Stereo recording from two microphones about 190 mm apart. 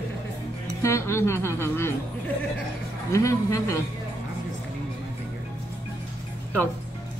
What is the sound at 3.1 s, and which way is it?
Speech, 15° left (ahead or behind).